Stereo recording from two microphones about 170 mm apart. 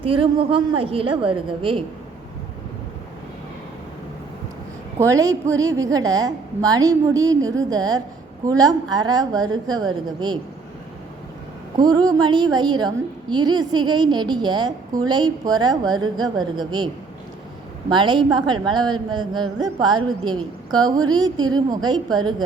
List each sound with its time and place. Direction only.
0.0 s a woman's voice: 30° right (ahead or behind)
4.9 s a woman's voice: 20° right (ahead or behind)
11.8 s a woman's voice: 20° right (ahead or behind)